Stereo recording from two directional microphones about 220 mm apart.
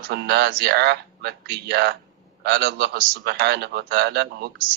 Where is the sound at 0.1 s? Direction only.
50° right (ahead or behind).